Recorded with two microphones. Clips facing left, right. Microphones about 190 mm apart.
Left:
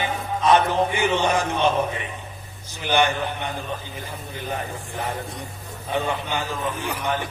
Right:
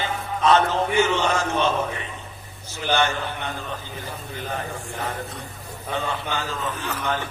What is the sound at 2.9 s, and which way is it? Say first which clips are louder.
Speech: left 2 dB; 15° left (ahead or behind).